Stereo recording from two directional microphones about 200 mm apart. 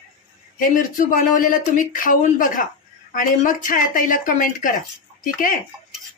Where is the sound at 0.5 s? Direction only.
45° left (ahead or behind).